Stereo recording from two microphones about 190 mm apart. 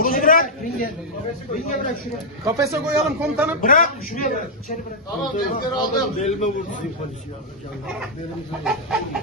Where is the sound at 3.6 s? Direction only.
45° left (ahead or behind).